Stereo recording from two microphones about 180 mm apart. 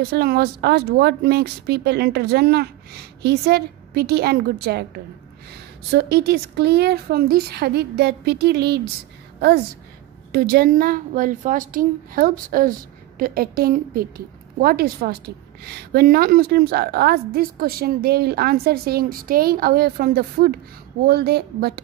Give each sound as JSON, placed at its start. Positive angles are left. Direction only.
{"t": 0.1, "sound": "a woman's voice", "side_deg": -60}
{"t": 10.3, "sound": "a woman's voice", "side_deg": -55}